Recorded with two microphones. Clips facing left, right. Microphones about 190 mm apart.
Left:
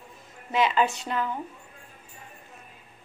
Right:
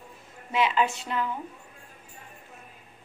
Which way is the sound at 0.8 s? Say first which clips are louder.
Left 2 dB; 40° left (ahead or behind).